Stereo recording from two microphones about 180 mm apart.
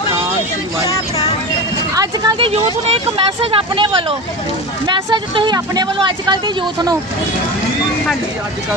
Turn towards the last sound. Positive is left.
turn(degrees=-25)  # may be behind; listen again after turning